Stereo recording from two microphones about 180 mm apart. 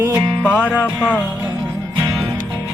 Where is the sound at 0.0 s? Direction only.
15° right (ahead or behind).